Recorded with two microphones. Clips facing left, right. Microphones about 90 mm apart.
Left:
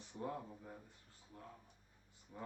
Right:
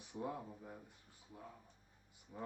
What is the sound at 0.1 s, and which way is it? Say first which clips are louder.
Speech: right 1 dB; 10° right (ahead or behind).